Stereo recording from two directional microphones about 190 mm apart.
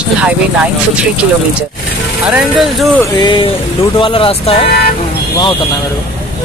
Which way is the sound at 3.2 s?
25° left (ahead or behind).